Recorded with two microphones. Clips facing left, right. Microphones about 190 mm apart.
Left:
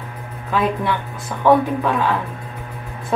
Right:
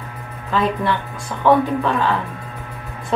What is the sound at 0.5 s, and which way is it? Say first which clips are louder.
A woman's voice: even; 10° left (ahead or behind).